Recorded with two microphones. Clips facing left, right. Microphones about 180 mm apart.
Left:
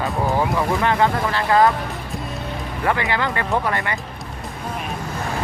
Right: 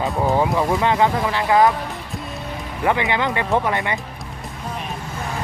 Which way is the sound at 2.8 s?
15° right (ahead or behind).